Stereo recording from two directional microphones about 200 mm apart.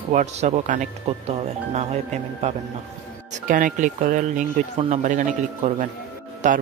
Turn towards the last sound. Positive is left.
turn(degrees=-40)  # may be behind; listen again after turning